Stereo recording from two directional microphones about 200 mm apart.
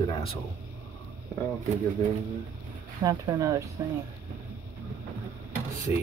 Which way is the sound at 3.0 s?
20° right (ahead or behind).